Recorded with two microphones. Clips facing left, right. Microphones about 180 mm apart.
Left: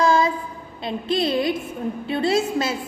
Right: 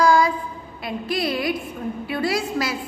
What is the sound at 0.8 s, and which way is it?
A woman's voice, 25° left (ahead or behind).